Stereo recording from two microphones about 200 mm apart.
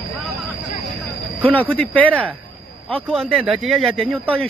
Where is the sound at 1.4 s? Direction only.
10° left (ahead or behind).